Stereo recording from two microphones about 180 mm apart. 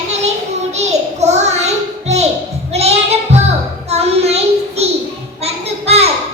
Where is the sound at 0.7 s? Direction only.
40° right (ahead or behind).